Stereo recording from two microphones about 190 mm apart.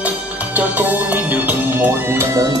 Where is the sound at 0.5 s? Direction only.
10° right (ahead or behind).